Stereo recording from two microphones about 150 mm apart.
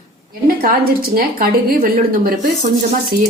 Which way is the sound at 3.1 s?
75° right (ahead or behind).